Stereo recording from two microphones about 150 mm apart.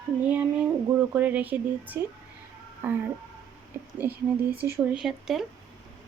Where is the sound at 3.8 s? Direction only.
15° right (ahead or behind).